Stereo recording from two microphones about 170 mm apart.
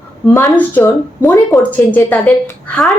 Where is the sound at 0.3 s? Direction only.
15° left (ahead or behind).